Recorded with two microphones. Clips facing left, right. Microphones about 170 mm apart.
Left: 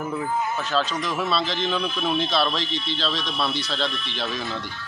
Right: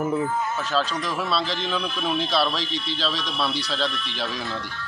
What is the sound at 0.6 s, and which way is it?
A man's voice, 5° right (ahead or behind).